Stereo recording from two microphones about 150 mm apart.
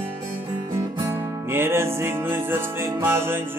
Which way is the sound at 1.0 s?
15° right (ahead or behind).